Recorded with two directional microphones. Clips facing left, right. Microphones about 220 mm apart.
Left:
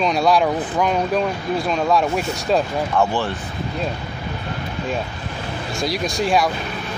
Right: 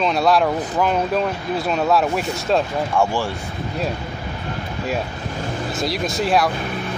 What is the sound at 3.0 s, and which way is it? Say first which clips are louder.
Speech: even; 10° right (ahead or behind).